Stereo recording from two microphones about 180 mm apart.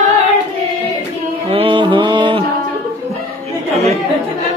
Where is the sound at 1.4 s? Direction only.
30° right (ahead or behind).